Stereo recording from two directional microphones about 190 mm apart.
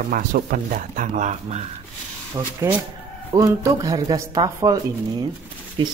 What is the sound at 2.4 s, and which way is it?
Speech, 20° right (ahead or behind).